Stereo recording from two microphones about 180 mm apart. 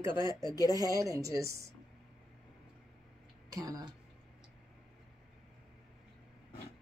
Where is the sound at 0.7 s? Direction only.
20° right (ahead or behind).